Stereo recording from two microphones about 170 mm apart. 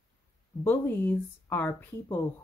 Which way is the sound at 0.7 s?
10° left (ahead or behind).